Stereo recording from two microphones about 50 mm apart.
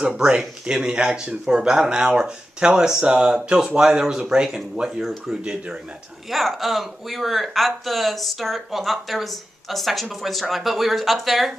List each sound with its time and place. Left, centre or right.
0.0 s speech: right
5.4 s speech: right
6.3 s speech: centre